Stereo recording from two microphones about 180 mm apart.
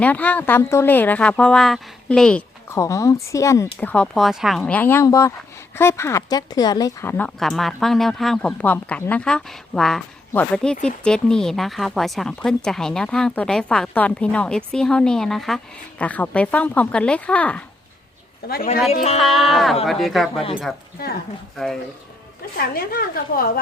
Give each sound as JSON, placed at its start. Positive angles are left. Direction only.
{"t": 0.0, "sound": "speech", "side_deg": 10}
{"t": 2.7, "sound": "speech", "side_deg": 15}
{"t": 7.3, "sound": "speech", "side_deg": 0}
{"t": 18.4, "sound": "a woman's voice", "side_deg": 55}
{"t": 19.2, "sound": "speech", "side_deg": 0}
{"t": 22.5, "sound": "a woman's voice", "side_deg": 55}